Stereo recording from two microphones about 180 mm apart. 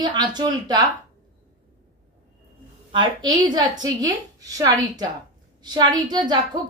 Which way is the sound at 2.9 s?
25° right (ahead or behind).